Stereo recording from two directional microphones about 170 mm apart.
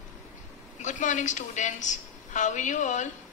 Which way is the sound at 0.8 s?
45° left (ahead or behind).